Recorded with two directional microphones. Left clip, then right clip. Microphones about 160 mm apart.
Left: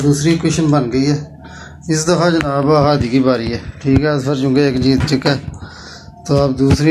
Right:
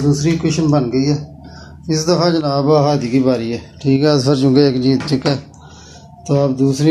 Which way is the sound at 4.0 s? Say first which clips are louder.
Right 6 dB; 85° right.